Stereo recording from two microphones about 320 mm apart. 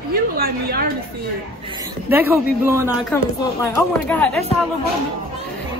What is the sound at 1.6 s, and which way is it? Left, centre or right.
Speech, centre.